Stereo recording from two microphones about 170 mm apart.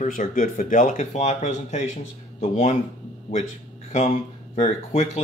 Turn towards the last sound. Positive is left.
turn(degrees=40)  # may be behind; listen again after turning